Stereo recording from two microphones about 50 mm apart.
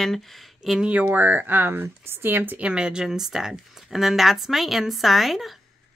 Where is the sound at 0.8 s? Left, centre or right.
Right.